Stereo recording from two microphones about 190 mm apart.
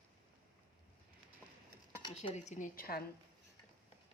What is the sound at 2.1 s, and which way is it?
Speech, 35° left (ahead or behind).